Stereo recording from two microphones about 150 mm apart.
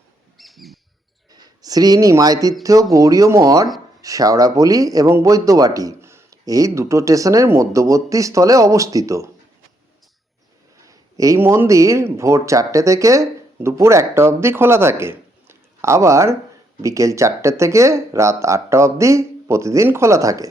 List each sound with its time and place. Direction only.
0.3 s bird: centre (ahead or behind)
1.3 s speech: 25° right (ahead or behind)
10.8 s a man's voice: 20° right (ahead or behind)